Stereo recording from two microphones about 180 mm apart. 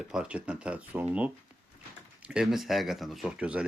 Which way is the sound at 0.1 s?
5° right (ahead or behind).